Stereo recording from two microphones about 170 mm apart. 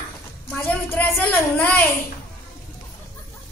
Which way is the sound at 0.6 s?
15° left (ahead or behind).